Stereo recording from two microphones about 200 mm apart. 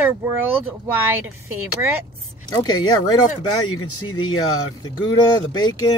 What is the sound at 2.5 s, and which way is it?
Speech, 20° left (ahead or behind).